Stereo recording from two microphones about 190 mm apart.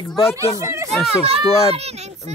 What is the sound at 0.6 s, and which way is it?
Speech, 15° right (ahead or behind).